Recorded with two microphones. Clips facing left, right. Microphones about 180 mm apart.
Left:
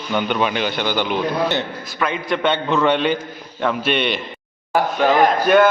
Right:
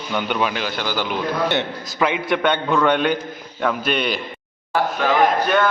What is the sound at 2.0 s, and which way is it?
Speech, 15° right (ahead or behind).